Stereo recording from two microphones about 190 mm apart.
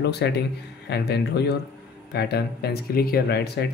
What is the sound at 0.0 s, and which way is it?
A man's voice, 60° left (ahead or behind).